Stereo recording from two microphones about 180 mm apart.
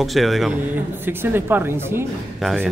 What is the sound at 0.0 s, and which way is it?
Speech, centre (ahead or behind).